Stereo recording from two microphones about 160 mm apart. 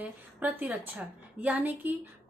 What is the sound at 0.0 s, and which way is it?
A woman's voice, 10° right (ahead or behind).